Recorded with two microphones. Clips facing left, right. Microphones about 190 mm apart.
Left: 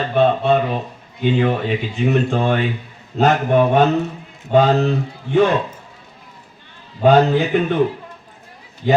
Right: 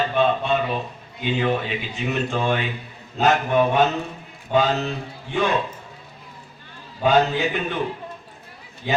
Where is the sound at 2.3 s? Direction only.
40° left (ahead or behind).